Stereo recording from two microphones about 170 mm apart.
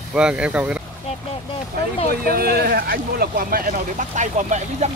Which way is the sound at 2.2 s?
65° right (ahead or behind).